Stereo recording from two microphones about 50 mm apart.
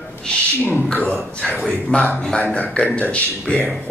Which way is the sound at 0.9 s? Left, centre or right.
Left.